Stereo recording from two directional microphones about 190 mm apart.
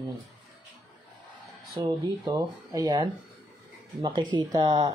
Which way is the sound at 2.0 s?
25° right (ahead or behind).